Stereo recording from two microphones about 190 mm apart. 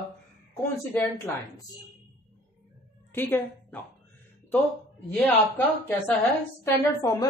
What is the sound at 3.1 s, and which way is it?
Speech, 10° left (ahead or behind).